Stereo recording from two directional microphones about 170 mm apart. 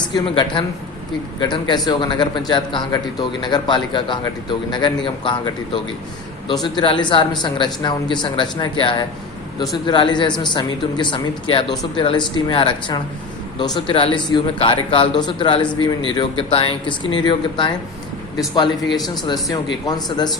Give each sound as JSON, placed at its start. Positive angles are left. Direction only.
{"t": 0.1, "sound": "speech", "side_deg": 30}